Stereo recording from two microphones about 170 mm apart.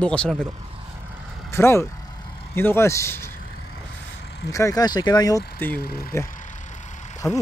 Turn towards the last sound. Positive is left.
turn(degrees=20)  # may be behind; listen again after turning